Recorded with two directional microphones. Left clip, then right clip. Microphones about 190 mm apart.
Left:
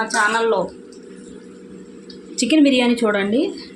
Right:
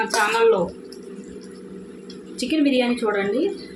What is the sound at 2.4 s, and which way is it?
Speech, 40° left (ahead or behind).